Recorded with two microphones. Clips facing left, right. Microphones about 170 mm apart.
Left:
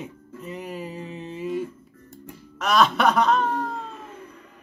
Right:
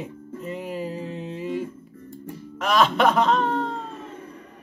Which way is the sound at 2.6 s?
Centre (ahead or behind).